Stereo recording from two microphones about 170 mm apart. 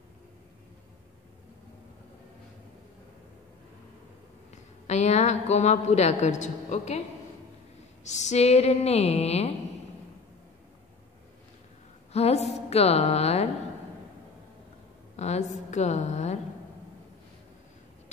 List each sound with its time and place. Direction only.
4.8 s a woman's voice: 40° left (ahead or behind)
8.0 s a woman's voice: 45° left (ahead or behind)
12.1 s a woman's voice: 40° left (ahead or behind)
15.1 s a woman's voice: 40° left (ahead or behind)